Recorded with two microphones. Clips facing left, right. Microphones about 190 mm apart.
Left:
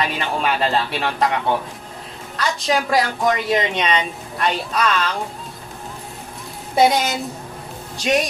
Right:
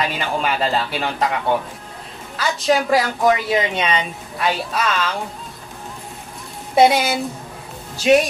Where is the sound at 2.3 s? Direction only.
5° right (ahead or behind).